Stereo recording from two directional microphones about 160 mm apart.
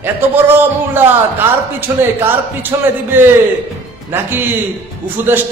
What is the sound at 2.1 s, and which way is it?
A man's voice, 15° right (ahead or behind).